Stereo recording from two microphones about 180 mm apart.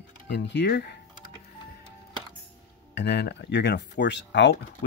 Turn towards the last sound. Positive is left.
turn(degrees=75)  # may be behind; listen again after turning